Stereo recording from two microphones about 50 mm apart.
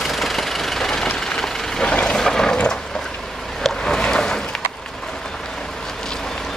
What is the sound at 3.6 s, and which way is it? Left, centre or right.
Boat, centre.